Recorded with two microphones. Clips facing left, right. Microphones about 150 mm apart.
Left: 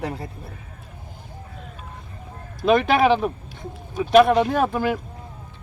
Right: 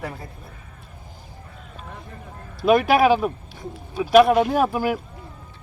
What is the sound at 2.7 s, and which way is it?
Speech, 5° right (ahead or behind).